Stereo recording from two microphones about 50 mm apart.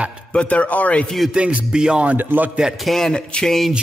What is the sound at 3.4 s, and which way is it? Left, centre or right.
Music, centre.